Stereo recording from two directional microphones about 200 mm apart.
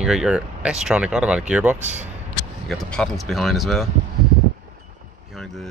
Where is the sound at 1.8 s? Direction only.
35° right (ahead or behind).